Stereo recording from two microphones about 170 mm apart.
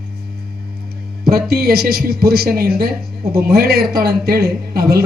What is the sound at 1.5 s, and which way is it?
A woman's voice, 65° right (ahead or behind).